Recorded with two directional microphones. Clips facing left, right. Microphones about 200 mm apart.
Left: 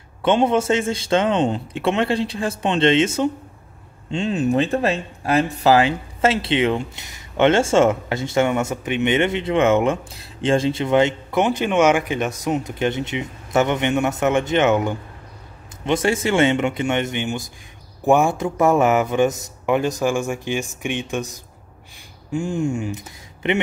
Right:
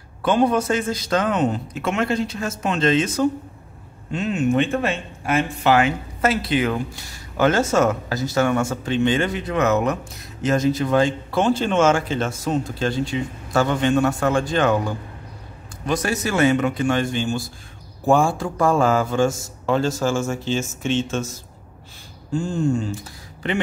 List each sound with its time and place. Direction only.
0.2 s a man's voice: 25° left (ahead or behind)
22.3 s speech: 15° left (ahead or behind)